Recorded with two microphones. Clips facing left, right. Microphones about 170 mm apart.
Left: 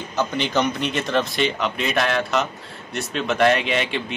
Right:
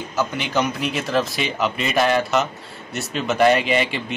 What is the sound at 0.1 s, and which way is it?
A man's voice, 5° right (ahead or behind).